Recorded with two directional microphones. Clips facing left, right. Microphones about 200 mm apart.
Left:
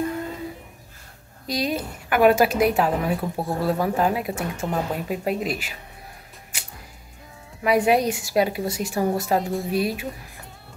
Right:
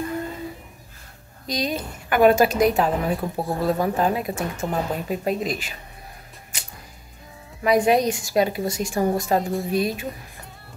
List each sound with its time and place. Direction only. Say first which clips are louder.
1.5 s a woman's voice: left 1 dB; 5° left (ahead or behind)
6.5 s music: right 1 dB; 10° left (ahead or behind)
7.6 s a woman's voice: right 1 dB; 10° left (ahead or behind)